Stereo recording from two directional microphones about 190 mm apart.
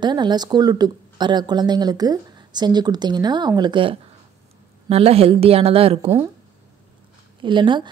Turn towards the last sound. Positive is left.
turn(degrees=-25)  # may be behind; listen again after turning